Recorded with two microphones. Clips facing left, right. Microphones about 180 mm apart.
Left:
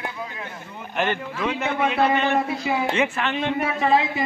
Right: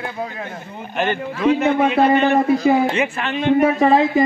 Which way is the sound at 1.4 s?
30° right (ahead or behind).